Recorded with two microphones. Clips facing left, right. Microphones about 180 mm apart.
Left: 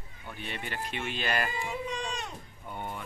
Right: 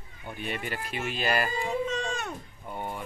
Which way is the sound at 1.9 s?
75° right (ahead or behind).